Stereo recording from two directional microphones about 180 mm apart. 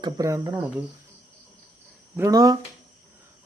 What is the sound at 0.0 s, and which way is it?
Speech, 20° right (ahead or behind).